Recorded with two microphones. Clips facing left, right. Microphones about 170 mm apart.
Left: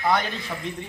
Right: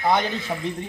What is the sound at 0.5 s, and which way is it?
Speech, 35° right (ahead or behind).